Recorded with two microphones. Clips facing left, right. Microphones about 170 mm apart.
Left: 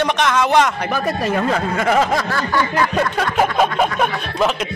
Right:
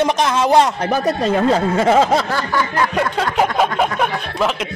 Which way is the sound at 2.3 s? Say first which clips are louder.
Even; 10° right (ahead or behind).